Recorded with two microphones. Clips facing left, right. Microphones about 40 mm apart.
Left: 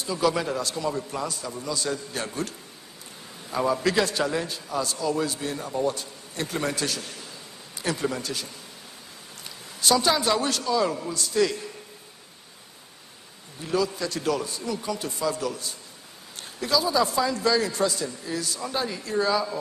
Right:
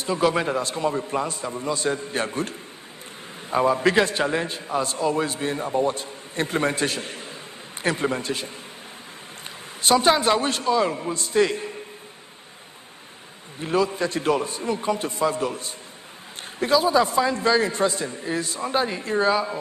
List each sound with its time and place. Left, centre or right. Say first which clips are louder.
0.0 s a man's voice: right 3 dB; right
9.8 s a man's voice: right 4 dB; right
13.6 s a man's voice: right 4 dB; right